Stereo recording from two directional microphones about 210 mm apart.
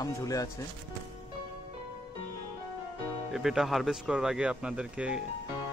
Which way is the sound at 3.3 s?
Centre (ahead or behind).